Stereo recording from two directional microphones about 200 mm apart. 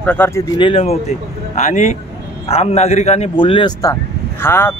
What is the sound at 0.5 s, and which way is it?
Speech, 25° left (ahead or behind).